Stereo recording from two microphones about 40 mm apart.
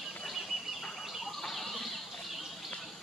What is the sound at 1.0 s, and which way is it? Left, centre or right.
Bird, centre.